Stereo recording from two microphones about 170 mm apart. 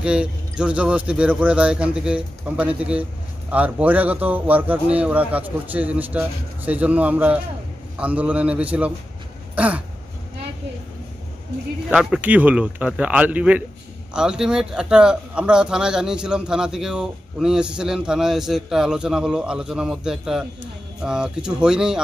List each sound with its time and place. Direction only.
0.0 s a man's voice: 5° right (ahead or behind)
11.9 s a man's voice: 5° right (ahead or behind)